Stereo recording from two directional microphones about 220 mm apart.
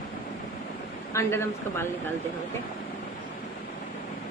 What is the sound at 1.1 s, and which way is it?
Speech, 10° left (ahead or behind).